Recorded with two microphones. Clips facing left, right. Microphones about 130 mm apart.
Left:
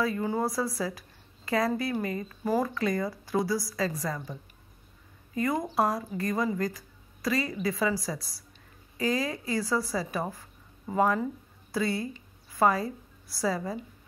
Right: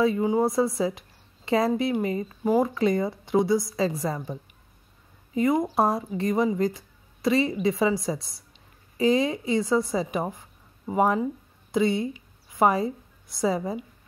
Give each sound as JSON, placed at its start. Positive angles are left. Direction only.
{"t": 0.0, "sound": "a woman's voice", "side_deg": -20}